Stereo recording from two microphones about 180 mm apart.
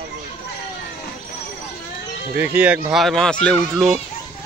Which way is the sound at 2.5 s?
10° right (ahead or behind).